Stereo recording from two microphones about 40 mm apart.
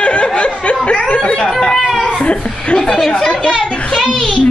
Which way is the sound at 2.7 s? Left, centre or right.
Centre.